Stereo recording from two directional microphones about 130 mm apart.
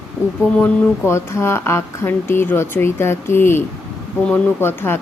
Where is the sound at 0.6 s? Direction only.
20° left (ahead or behind).